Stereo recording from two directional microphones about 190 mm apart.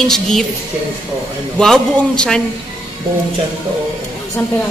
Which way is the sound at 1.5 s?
5° left (ahead or behind).